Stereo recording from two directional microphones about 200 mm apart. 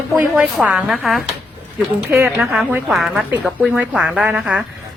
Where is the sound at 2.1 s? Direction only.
10° right (ahead or behind).